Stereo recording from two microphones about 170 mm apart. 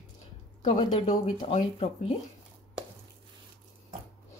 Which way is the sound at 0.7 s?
30° left (ahead or behind).